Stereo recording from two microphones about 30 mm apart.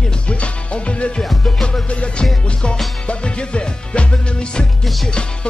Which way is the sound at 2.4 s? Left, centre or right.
Left.